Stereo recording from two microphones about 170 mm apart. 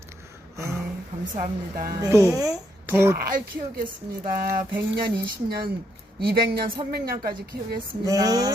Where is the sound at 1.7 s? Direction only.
55° right (ahead or behind).